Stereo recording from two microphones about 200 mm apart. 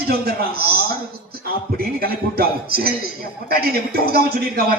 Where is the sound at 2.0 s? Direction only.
50° right (ahead or behind).